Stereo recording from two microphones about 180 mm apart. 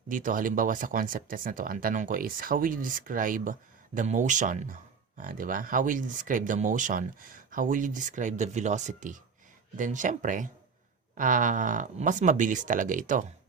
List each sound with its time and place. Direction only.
0.1 s speech: 45° right (ahead or behind)